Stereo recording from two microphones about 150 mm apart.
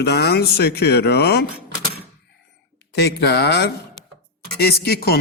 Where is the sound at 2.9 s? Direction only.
90° left.